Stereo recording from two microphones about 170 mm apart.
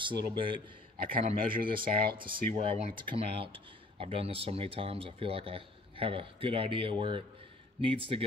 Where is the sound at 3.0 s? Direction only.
30° right (ahead or behind).